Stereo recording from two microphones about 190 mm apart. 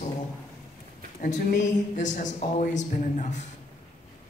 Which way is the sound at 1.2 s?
40° left (ahead or behind).